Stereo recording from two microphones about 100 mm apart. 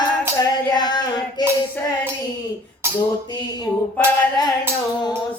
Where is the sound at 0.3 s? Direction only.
45° left (ahead or behind).